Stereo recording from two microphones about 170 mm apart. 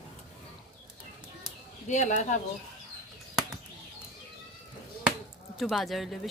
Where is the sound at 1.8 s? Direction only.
45° left (ahead or behind).